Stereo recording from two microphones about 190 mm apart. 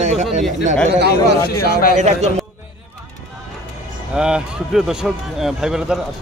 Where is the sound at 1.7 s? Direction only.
50° left (ahead or behind).